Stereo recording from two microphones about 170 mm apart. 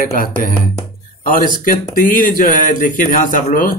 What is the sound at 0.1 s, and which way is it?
Speech, 55° left (ahead or behind).